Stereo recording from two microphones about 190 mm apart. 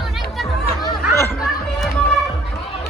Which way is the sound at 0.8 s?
15° left (ahead or behind).